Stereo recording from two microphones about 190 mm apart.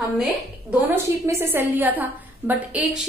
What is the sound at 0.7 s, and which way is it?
A woman's voice, 10° right (ahead or behind).